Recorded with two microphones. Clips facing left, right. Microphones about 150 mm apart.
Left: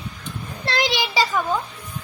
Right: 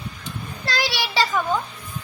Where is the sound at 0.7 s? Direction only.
20° left (ahead or behind).